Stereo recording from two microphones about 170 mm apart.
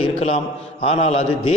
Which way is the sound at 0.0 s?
35° left (ahead or behind).